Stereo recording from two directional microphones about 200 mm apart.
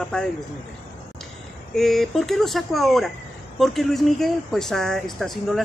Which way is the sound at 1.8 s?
Centre (ahead or behind).